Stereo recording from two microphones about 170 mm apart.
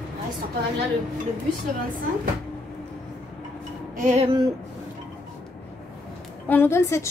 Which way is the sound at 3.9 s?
45° right (ahead or behind).